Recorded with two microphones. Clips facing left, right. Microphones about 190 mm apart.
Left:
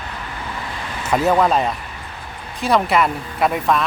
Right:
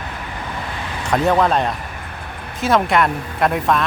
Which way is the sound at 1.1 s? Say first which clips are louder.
Even; 5° left (ahead or behind).